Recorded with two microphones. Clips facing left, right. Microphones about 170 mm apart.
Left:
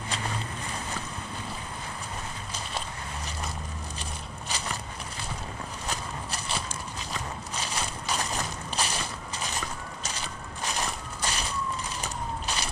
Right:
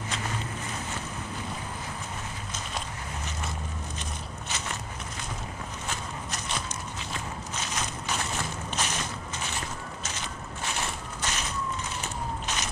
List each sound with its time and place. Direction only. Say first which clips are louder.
4.5 s walk: left 2 dB; 35° left (ahead or behind)
5.9 s walk: left 2 dB; 30° left (ahead or behind)
7.5 s crushing: left 1 dB; 35° left (ahead or behind)
10.0 s a sound: even; 35° left (ahead or behind)